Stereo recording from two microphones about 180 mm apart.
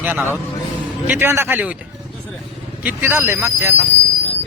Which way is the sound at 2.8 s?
10° right (ahead or behind).